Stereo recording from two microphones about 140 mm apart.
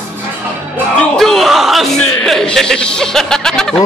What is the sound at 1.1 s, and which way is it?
A man's voice, centre (ahead or behind).